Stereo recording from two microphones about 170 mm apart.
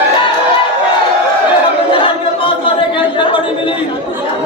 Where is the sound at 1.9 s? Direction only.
30° left (ahead or behind).